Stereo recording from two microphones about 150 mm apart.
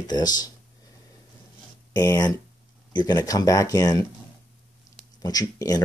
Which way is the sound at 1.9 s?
20° left (ahead or behind).